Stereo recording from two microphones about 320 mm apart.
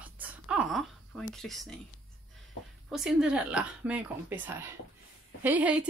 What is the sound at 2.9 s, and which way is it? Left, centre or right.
Speech, centre.